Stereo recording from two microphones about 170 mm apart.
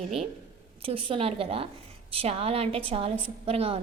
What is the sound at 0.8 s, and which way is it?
A woman's voice, 30° right (ahead or behind).